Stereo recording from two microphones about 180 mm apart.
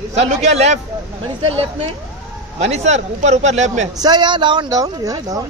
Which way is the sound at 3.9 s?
25° right (ahead or behind).